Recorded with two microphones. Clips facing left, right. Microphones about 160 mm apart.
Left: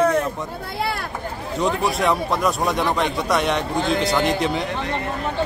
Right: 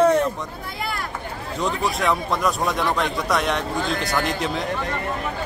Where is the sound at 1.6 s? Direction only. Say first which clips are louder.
Left 2 dB; centre (ahead or behind).